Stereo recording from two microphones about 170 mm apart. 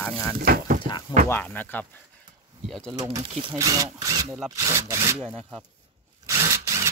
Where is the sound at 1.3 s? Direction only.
10° left (ahead or behind).